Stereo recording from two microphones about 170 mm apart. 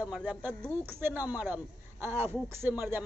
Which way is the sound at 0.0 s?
5° right (ahead or behind).